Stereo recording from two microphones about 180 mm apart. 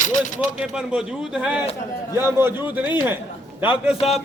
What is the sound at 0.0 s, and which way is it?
Speech, 45° left (ahead or behind).